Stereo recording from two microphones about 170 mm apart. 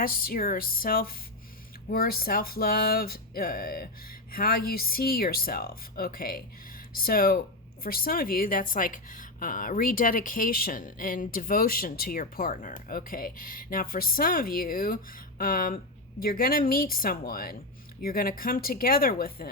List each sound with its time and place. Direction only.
0.0 s speech: 60° left (ahead or behind)